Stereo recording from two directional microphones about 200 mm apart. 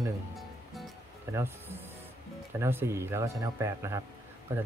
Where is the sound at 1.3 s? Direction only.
10° right (ahead or behind).